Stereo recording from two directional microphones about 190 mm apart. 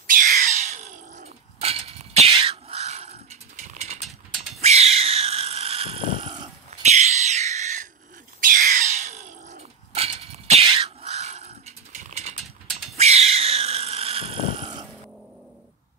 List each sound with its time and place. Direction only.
0.0 s cat: 45° right (ahead or behind); by 6.5 s 25° right (ahead or behind)
6.8 s a sound: 35° right (ahead or behind)
12.9 s cat: 35° right (ahead or behind)